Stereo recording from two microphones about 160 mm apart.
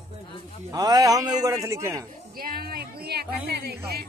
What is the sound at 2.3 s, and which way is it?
A woman's voice, 65° right (ahead or behind).